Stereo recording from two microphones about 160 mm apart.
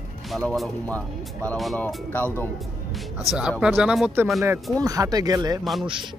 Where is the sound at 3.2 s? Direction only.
Centre (ahead or behind).